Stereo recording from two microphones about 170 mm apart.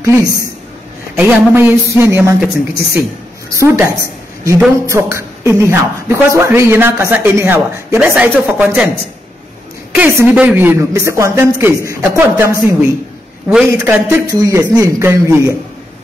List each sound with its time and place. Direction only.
0.0 s a woman's voice: 20° right (ahead or behind)
1.1 s speech: 5° right (ahead or behind)
3.5 s speech: 15° right (ahead or behind)
9.9 s speech: 10° right (ahead or behind)
13.5 s a man's voice: 5° right (ahead or behind)
14.0 s speech: 20° right (ahead or behind)